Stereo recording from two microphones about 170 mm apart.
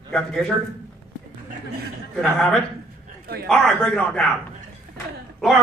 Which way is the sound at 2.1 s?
Centre (ahead or behind).